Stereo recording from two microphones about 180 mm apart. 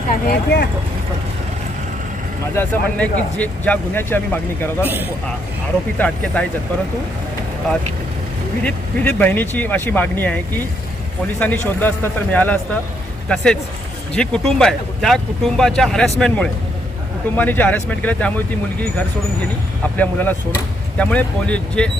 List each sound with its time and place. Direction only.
0.3 s speech: 60° left (ahead or behind)
2.6 s speech: 10° left (ahead or behind)
6.0 s speech: 5° left (ahead or behind)
8.6 s speech: 10° left (ahead or behind)